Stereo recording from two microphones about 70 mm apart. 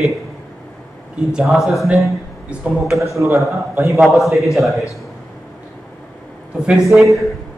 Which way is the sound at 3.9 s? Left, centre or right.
Centre.